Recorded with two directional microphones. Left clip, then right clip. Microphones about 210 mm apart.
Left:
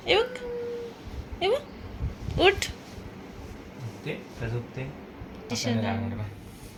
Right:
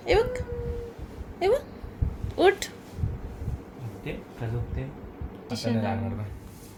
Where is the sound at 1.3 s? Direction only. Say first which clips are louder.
Right 2 dB; 25° right (ahead or behind).